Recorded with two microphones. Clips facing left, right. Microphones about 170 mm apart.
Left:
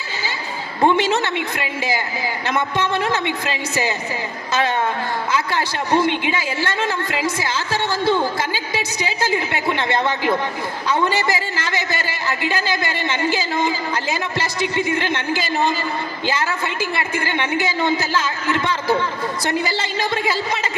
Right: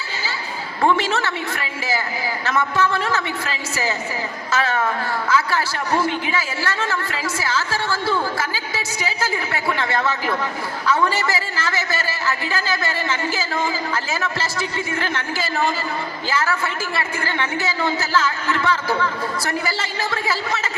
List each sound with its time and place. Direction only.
0.8 s a man's voice: 20° left (ahead or behind)